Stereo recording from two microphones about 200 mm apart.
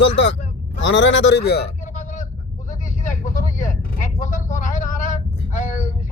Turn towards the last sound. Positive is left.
turn(degrees=40)  # may be behind; listen again after turning